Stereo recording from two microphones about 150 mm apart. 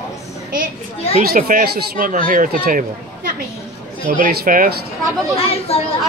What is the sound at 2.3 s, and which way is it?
Speech, 65° right (ahead or behind).